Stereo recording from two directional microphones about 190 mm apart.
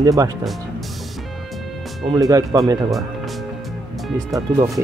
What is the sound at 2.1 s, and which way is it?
Speech, 20° right (ahead or behind).